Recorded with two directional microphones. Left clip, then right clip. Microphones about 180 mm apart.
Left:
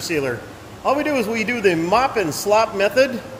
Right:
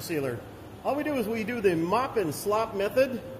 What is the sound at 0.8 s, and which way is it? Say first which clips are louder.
A man's voice: left 9 dB; 20° left (ahead or behind).